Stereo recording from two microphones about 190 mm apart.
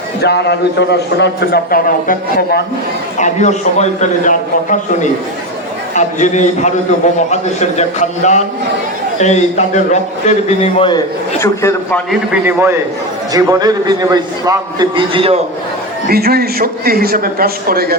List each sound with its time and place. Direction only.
0.2 s a man's voice: 60° left (ahead or behind)
3.2 s a man's voice: 40° left (ahead or behind)
11.3 s a man's voice: 15° left (ahead or behind)
12.3 s a man's voice: 10° right (ahead or behind); by 15.4 s 30° right (ahead or behind)
16.0 s a man's voice: 55° right (ahead or behind)